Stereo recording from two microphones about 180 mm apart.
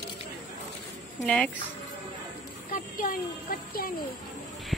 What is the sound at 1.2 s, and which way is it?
Speech, 5° left (ahead or behind).